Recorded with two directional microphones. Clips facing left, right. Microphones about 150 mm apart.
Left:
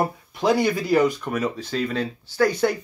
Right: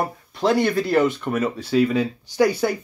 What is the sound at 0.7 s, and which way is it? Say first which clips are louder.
Speech: right 1 dB; centre (ahead or behind).